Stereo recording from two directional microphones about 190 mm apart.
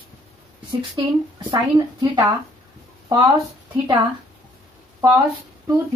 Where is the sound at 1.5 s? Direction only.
20° right (ahead or behind).